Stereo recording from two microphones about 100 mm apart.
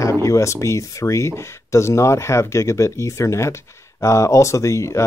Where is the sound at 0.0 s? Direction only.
30° left (ahead or behind).